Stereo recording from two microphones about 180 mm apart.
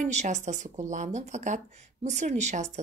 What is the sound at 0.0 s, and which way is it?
A woman's voice, 40° right (ahead or behind).